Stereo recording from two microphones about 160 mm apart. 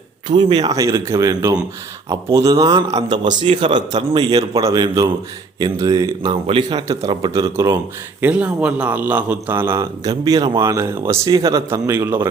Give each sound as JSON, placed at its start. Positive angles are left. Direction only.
{"t": 0.3, "sound": "a man's voice", "side_deg": -30}
{"t": 8.2, "sound": "a man's voice", "side_deg": -10}